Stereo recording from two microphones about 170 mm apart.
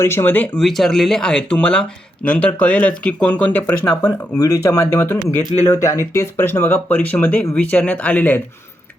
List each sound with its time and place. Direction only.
0.0 s speech: 15° left (ahead or behind)